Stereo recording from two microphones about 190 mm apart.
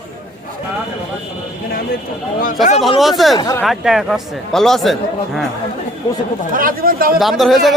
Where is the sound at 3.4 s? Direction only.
20° left (ahead or behind).